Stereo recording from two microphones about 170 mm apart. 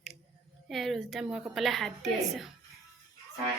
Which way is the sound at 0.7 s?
Centre (ahead or behind).